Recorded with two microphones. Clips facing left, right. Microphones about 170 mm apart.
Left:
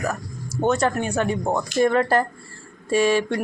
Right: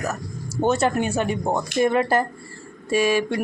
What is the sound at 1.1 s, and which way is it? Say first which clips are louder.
Speech: even; 10° right (ahead or behind).